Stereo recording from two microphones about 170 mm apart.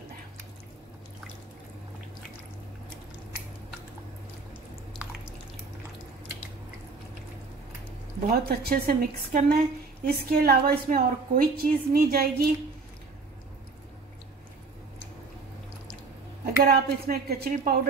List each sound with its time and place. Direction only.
8.3 s a woman's voice: 60° right (ahead or behind)
16.6 s a woman's voice: 65° right (ahead or behind)